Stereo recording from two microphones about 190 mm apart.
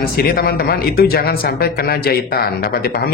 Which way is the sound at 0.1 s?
50° left (ahead or behind).